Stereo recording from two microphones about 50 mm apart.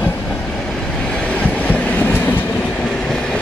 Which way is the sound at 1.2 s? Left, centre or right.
Left.